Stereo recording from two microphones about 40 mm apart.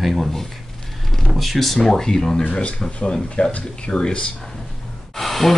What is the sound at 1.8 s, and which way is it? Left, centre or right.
Speech, centre.